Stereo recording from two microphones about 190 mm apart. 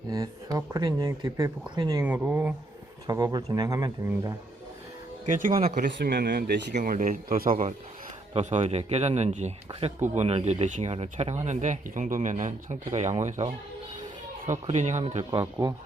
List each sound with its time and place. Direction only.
0.1 s speech: 20° right (ahead or behind)
2.0 s speech: 10° right (ahead or behind)
3.1 s speech: 20° right (ahead or behind)
5.3 s speech: 45° right (ahead or behind)
5.9 s speech: 65° right (ahead or behind); by 7.7 s 50° right (ahead or behind)
8.3 s speech: 35° right (ahead or behind)
15.0 s speech: 25° right (ahead or behind)